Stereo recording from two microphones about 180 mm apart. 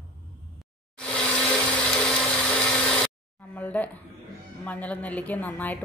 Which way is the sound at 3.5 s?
10° left (ahead or behind).